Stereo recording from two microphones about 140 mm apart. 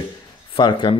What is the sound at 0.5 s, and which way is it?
Speech, 35° left (ahead or behind).